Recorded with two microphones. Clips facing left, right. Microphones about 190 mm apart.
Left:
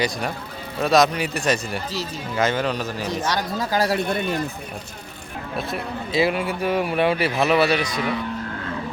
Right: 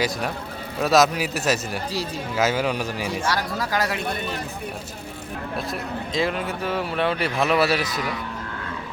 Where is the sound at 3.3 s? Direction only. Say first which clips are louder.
Left 2 dB; 25° left (ahead or behind).